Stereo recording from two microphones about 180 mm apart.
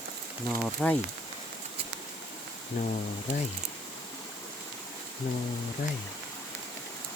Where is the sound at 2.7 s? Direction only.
45° left (ahead or behind).